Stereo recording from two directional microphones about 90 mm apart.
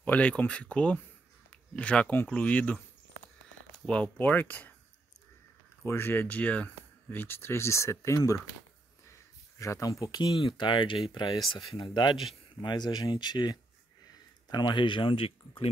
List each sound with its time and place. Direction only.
0.0 s speech: 15° left (ahead or behind)
3.8 s speech: 15° left (ahead or behind)
5.9 s speech: 25° left (ahead or behind)
9.6 s speech: 35° left (ahead or behind)
10.3 s speech: 65° left (ahead or behind); by 15.7 s 85° left